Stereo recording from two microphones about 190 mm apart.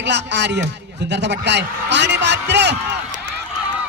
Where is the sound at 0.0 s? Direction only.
65° right (ahead or behind).